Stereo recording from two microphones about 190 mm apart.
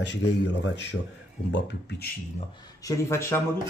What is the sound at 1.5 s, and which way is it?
Speech, 65° left (ahead or behind).